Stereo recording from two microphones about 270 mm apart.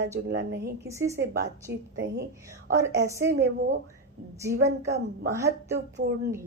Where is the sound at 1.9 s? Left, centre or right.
Right.